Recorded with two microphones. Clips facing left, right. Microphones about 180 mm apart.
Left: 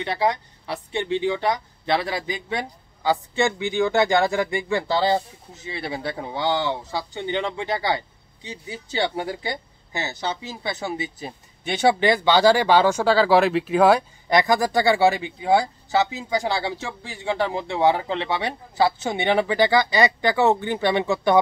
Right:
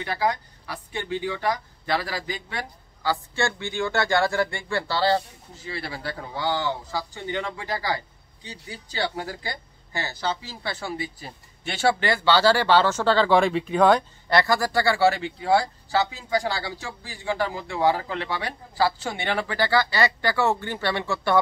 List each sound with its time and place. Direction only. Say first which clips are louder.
0.0 s speech: left 3 dB; 25° left (ahead or behind)